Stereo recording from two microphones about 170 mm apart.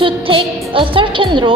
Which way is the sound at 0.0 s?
30° right (ahead or behind).